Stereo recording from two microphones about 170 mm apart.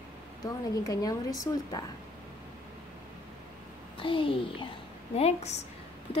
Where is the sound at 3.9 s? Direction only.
30° left (ahead or behind).